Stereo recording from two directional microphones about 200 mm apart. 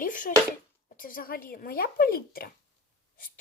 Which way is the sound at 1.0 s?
45° left (ahead or behind).